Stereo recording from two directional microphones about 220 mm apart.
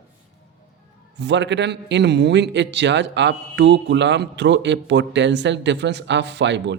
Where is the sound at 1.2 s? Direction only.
55° right (ahead or behind).